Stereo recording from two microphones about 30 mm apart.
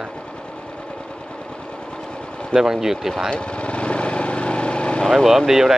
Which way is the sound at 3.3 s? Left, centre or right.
Left.